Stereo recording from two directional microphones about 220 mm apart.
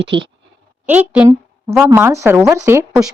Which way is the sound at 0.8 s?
5° right (ahead or behind).